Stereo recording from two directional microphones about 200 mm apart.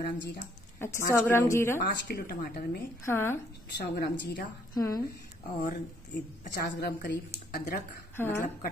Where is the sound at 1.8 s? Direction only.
50° left (ahead or behind).